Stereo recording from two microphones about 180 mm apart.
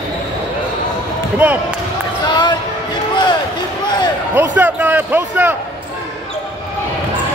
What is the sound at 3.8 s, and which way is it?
Basketball bounce, 25° left (ahead or behind).